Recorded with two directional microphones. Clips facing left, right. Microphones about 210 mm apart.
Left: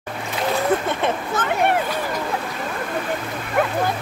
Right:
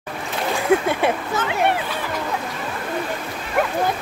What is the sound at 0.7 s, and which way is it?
Speech, 10° right (ahead or behind).